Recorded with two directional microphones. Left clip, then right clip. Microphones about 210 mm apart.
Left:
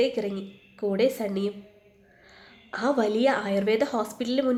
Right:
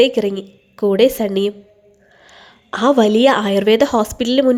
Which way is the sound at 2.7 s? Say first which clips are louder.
Right 11 dB; 40° right (ahead or behind).